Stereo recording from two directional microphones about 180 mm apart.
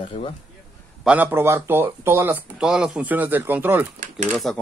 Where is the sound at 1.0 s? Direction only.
10° right (ahead or behind).